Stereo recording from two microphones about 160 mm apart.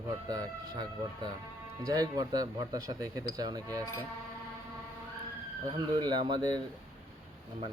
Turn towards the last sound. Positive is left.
turn(degrees=-30)  # may be behind; listen again after turning